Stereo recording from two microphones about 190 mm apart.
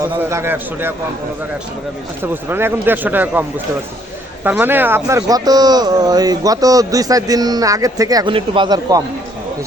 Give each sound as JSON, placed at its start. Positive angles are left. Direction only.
{"t": 0.2, "sound": "speech", "side_deg": -15}
{"t": 2.2, "sound": "speech", "side_deg": -10}
{"t": 4.4, "sound": "speech", "side_deg": -10}